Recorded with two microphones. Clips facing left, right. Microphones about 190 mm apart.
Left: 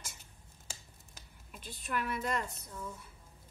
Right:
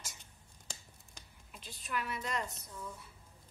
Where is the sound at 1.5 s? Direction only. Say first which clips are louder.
Left 3 dB; 50° left (ahead or behind).